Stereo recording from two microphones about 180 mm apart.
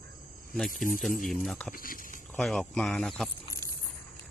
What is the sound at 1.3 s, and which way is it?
Speech, centre (ahead or behind).